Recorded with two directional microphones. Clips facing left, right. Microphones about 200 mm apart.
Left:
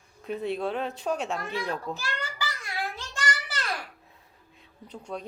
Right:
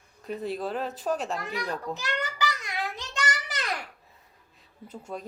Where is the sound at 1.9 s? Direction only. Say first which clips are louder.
Right 2 dB; 20° right (ahead or behind).